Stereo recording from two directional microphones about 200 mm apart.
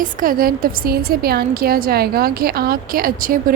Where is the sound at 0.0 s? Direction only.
45° right (ahead or behind).